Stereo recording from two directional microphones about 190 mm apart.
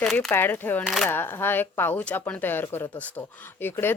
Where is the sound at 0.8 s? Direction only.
Centre (ahead or behind).